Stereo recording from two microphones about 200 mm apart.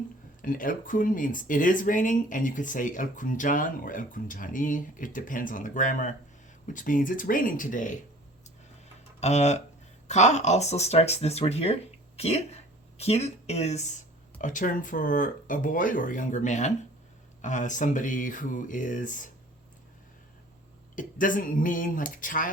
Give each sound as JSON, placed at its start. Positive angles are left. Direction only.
{"t": 0.4, "sound": "speech", "side_deg": 45}
{"t": 9.2, "sound": "speech", "side_deg": 35}
{"t": 20.9, "sound": "speech", "side_deg": 40}